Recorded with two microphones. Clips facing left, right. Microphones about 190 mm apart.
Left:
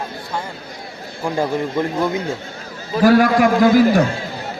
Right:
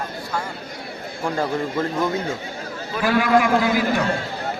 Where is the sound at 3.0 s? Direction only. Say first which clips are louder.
Left 6 dB; 40° left (ahead or behind).